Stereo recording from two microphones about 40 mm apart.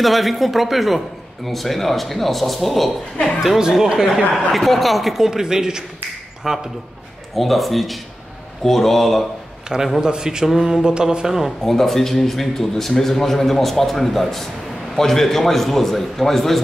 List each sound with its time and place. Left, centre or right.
0.0 s a man's voice: centre
3.7 s mantra: centre
4.3 s a man's voice: centre
5.2 s mantra: centre
7.3 s a man's voice: centre
9.9 s mantra: centre
11.6 s a man's voice: centre